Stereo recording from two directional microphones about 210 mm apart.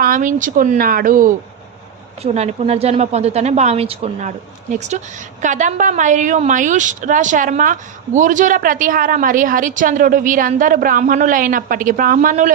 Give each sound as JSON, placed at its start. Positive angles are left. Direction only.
{"t": 0.0, "sound": "a woman's voice", "side_deg": -40}
{"t": 2.2, "sound": "a woman's voice", "side_deg": -30}